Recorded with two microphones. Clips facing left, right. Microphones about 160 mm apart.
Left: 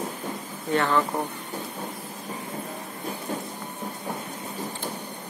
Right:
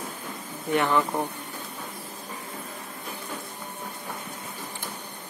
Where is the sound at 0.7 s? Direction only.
15° right (ahead or behind).